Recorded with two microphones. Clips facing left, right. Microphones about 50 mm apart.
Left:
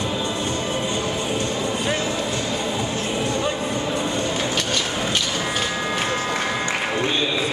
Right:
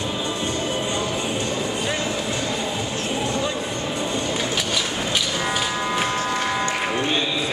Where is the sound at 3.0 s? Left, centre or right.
Left.